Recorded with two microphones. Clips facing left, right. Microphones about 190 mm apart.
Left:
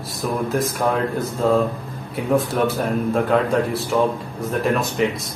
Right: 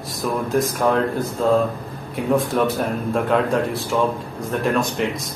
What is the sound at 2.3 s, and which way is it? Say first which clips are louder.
Speech: even; centre (ahead or behind).